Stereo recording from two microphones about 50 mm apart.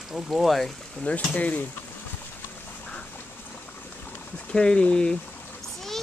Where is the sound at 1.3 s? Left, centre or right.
Left.